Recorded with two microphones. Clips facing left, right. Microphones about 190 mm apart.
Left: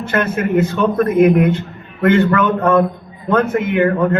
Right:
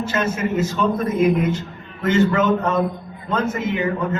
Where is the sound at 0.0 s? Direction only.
60° left (ahead or behind).